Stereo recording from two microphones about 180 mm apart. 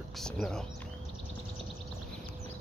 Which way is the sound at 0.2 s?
5° left (ahead or behind).